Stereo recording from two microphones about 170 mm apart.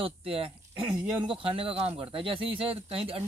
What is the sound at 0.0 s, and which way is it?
Speech, 35° right (ahead or behind).